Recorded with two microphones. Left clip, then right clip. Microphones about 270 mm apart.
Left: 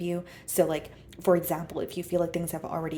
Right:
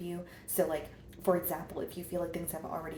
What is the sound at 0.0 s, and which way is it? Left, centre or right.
Speech, left.